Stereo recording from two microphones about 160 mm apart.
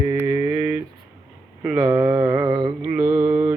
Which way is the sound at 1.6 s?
10° right (ahead or behind).